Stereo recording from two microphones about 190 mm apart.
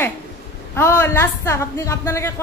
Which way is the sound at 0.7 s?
15° left (ahead or behind).